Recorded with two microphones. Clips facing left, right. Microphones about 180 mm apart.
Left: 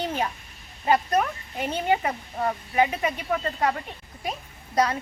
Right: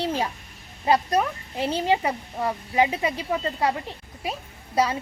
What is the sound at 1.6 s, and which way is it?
A child's voice, 30° right (ahead or behind).